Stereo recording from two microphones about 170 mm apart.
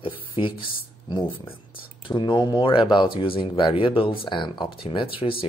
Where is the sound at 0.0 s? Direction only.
30° left (ahead or behind).